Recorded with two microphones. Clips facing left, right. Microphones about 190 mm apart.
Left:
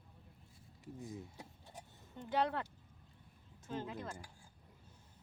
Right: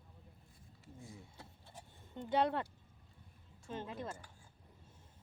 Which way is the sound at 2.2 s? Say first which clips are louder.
Right 2 dB; 25° right (ahead or behind).